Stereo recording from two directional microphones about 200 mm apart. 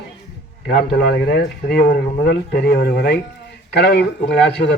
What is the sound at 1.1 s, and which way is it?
Speech, 55° left (ahead or behind).